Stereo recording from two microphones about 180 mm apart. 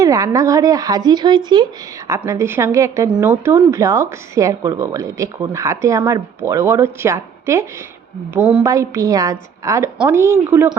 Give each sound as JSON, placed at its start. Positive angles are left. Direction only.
{"t": 0.0, "sound": "speech", "side_deg": -20}
{"t": 8.6, "sound": "speech", "side_deg": -15}